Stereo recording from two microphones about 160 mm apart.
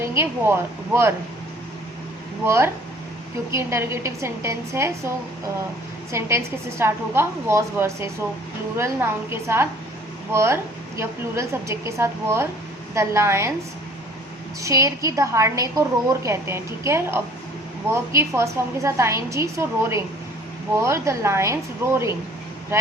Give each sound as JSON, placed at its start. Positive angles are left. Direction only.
{"t": 0.0, "sound": "a woman's voice", "side_deg": -15}
{"t": 2.4, "sound": "a woman's voice", "side_deg": -15}
{"t": 14.6, "sound": "a woman's voice", "side_deg": -20}